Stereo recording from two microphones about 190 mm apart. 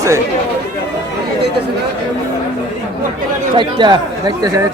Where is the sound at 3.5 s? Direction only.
20° right (ahead or behind).